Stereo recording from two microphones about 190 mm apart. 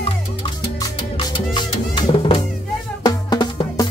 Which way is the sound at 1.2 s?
25° left (ahead or behind).